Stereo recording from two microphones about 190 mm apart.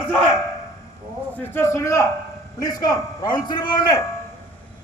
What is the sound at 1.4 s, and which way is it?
A man's voice, 15° left (ahead or behind).